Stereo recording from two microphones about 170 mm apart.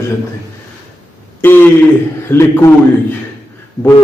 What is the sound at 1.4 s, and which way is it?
A man's voice, 10° left (ahead or behind).